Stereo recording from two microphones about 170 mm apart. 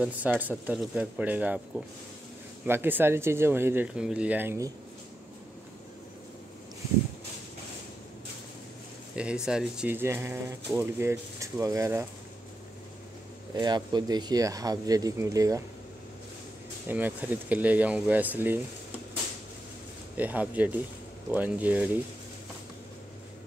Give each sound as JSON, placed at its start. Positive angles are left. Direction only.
{"t": 0.0, "sound": "speech", "side_deg": -10}
{"t": 2.6, "sound": "speech", "side_deg": -10}
{"t": 9.1, "sound": "speech", "side_deg": -5}
{"t": 13.6, "sound": "speech", "side_deg": -25}
{"t": 16.8, "sound": "speech", "side_deg": -10}
{"t": 20.2, "sound": "speech", "side_deg": -10}